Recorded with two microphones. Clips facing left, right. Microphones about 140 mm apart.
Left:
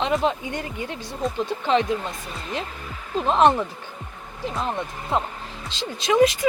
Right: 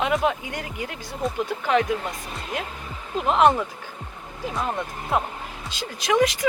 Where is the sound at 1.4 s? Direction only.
25° left (ahead or behind).